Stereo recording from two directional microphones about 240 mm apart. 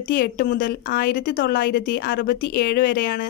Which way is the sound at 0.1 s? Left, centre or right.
Left.